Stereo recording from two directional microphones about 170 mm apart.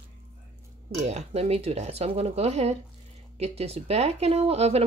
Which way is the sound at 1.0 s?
40° right (ahead or behind).